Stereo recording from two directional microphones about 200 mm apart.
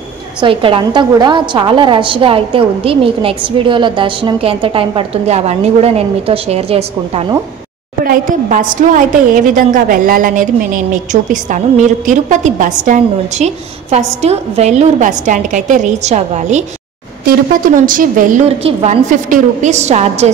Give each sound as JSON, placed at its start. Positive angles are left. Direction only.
{"t": 0.4, "sound": "a woman's voice", "side_deg": -25}
{"t": 8.0, "sound": "a woman's voice", "side_deg": -40}
{"t": 17.8, "sound": "a woman's voice", "side_deg": -40}
{"t": 18.6, "sound": "a woman's voice", "side_deg": -30}